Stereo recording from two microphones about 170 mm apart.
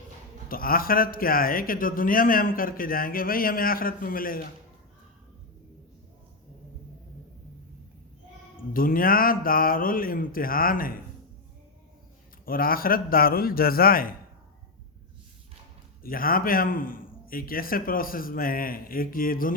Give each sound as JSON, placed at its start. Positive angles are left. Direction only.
{"t": 0.4, "sound": "a man's voice", "side_deg": 55}
{"t": 8.7, "sound": "a man's voice", "side_deg": 55}
{"t": 12.5, "sound": "a man's voice", "side_deg": 60}
{"t": 16.0, "sound": "a man's voice", "side_deg": 55}